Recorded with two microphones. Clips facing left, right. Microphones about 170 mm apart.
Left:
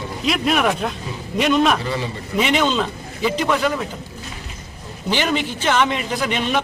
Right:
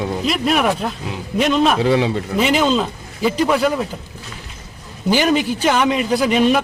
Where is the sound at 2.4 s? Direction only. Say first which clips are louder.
Right 2 dB; centre (ahead or behind).